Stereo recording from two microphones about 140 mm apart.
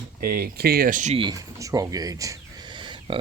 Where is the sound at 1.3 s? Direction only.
25° right (ahead or behind).